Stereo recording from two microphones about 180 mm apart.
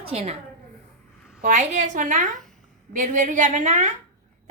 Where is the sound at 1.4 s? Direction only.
40° right (ahead or behind).